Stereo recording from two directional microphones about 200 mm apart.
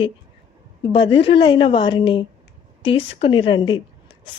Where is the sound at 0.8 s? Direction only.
25° left (ahead or behind).